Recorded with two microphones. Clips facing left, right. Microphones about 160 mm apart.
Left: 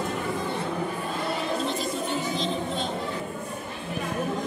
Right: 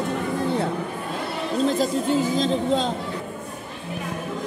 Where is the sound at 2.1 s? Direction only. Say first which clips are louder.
Right 7 dB; 90° right.